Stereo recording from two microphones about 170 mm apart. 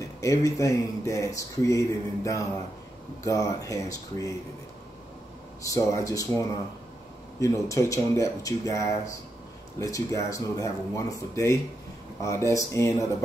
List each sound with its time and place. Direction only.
0.0 s speech: 20° left (ahead or behind)
5.6 s speech: 20° left (ahead or behind)